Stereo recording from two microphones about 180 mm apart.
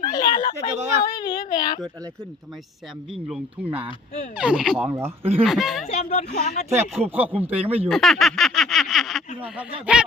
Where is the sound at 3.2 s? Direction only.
Centre (ahead or behind).